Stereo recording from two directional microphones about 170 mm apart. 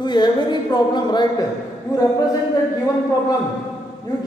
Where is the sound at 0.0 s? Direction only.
25° left (ahead or behind).